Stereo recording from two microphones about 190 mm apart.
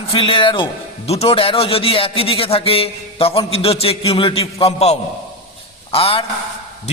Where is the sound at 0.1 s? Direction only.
30° left (ahead or behind).